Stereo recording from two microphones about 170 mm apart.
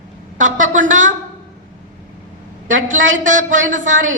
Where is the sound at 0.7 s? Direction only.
50° right (ahead or behind).